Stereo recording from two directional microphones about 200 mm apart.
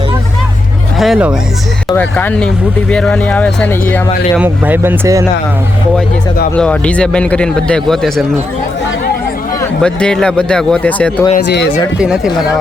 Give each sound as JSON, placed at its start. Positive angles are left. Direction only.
{"t": 0.9, "sound": "a man's voice", "side_deg": 0}
{"t": 4.4, "sound": "speech", "side_deg": -10}
{"t": 6.6, "sound": "a man's voice", "side_deg": 5}
{"t": 9.8, "sound": "a man's voice", "side_deg": 5}
{"t": 11.4, "sound": "speech", "side_deg": 60}
{"t": 11.9, "sound": "a man's voice", "side_deg": -5}